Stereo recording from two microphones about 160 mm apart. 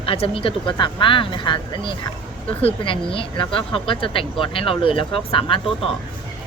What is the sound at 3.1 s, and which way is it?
Speech, 35° left (ahead or behind).